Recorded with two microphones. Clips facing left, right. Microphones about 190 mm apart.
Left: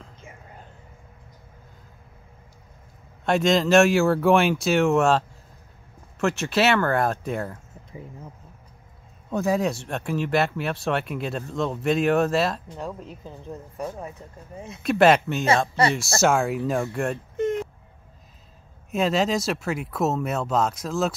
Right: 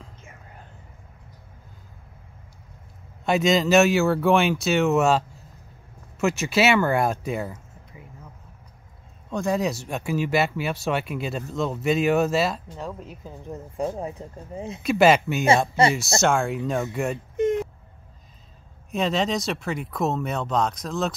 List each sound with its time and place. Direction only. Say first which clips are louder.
3.3 s speech: even; 5° right (ahead or behind)
9.3 s speech: left 1 dB; 5° left (ahead or behind)
13.7 s speech: right 6 dB; 25° right (ahead or behind)
14.8 s speech: even; centre (ahead or behind)
18.9 s speech: left 2 dB; 5° left (ahead or behind)